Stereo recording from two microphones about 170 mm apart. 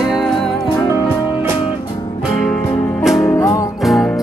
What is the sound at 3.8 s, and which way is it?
Music, centre (ahead or behind).